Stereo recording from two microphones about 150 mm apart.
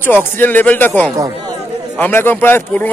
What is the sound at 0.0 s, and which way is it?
A man's voice, 15° left (ahead or behind).